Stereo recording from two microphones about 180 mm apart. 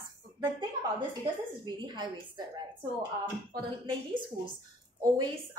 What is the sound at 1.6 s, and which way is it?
A woman's voice, 25° right (ahead or behind).